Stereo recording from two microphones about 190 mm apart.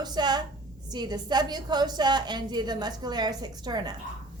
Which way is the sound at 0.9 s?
20° right (ahead or behind).